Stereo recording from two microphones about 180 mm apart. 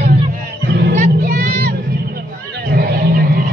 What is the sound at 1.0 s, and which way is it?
Vehicle, 50° right (ahead or behind).